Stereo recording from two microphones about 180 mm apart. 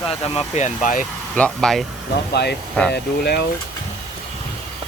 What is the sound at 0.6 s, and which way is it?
Speech, 45° left (ahead or behind).